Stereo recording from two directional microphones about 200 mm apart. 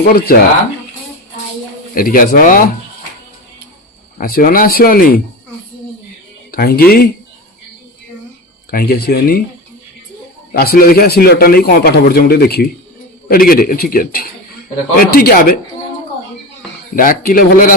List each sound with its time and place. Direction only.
0.0 s a man's voice: 50° left (ahead or behind)
2.0 s a man's voice: 45° left (ahead or behind)
4.2 s a man's voice: 45° left (ahead or behind)
6.5 s a man's voice: 50° left (ahead or behind)
8.7 s a man's voice: 50° left (ahead or behind)
10.5 s a man's voice: 50° left (ahead or behind)
16.9 s a man's voice: 45° left (ahead or behind)